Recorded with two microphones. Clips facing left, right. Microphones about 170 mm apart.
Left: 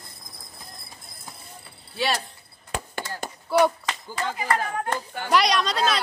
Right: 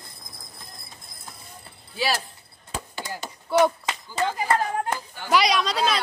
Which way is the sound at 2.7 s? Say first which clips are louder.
Left 2 dB; 65° left (ahead or behind).